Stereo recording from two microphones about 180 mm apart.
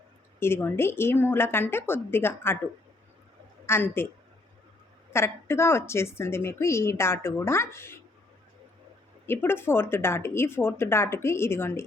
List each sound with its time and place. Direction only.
0.3 s a woman's voice: 15° left (ahead or behind)
3.7 s a woman's voice: 10° left (ahead or behind)
5.1 s a woman's voice: 15° left (ahead or behind)
9.2 s a woman's voice: 10° left (ahead or behind)